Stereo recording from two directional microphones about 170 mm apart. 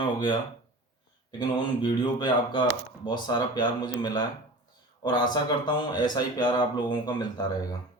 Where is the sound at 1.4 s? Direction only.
25° left (ahead or behind).